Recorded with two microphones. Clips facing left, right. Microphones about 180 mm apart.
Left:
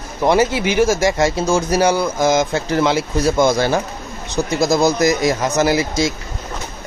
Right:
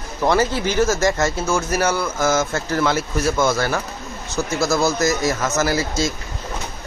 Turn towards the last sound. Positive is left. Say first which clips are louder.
# left 4 dB
turn(degrees=15)  # may be behind; listen again after turning